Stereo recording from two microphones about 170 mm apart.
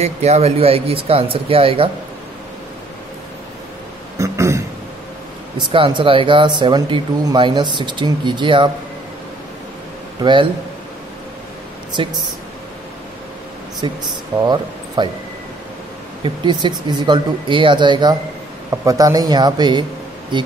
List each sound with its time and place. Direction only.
0.0 s speech: 40° right (ahead or behind)
4.2 s throat clearing: 15° right (ahead or behind)
5.6 s speech: 30° right (ahead or behind)
10.2 s speech: 30° right (ahead or behind)
11.9 s speech: 25° right (ahead or behind)
13.7 s speech: 25° right (ahead or behind)
16.4 s speech: 25° right (ahead or behind)